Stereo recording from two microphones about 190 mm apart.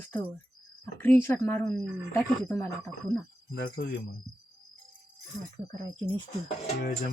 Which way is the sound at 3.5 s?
55° left (ahead or behind).